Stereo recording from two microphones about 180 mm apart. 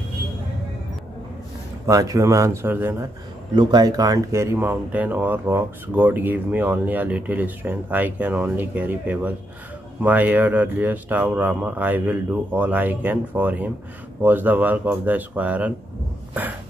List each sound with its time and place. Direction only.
1.9 s speech: 20° right (ahead or behind)
3.5 s speech: 20° right (ahead or behind)